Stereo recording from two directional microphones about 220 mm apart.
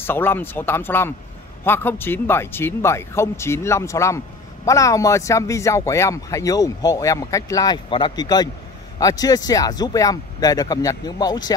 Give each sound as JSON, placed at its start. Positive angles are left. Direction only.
{"t": 0.0, "sound": "speech", "side_deg": 10}